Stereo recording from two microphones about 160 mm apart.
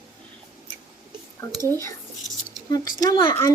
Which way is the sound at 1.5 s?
20° right (ahead or behind).